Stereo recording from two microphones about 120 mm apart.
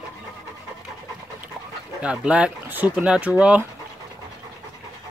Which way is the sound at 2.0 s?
10° right (ahead or behind).